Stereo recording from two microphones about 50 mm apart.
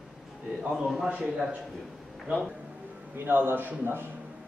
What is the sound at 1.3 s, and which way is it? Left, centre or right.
Speech, centre.